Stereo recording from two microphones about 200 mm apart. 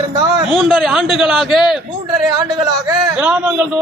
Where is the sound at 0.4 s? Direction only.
Centre (ahead or behind).